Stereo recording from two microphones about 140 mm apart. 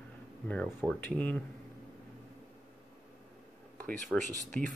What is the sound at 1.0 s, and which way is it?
Speech, 10° left (ahead or behind).